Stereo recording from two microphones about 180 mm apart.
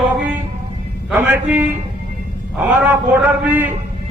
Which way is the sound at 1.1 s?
10° right (ahead or behind).